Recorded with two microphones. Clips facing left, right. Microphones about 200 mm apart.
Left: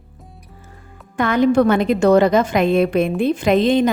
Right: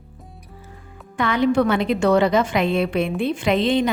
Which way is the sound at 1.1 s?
45° left (ahead or behind).